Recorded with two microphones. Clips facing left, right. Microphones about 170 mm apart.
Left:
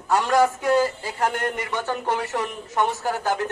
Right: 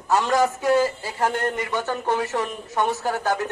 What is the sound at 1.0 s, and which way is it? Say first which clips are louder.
Speech: right 1 dB; 15° left (ahead or behind).